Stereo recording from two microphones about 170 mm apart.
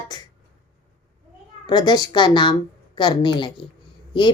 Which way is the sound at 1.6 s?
25° left (ahead or behind).